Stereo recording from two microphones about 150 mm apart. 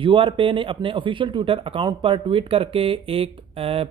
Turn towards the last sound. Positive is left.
turn(degrees=-40)  # may be behind; listen again after turning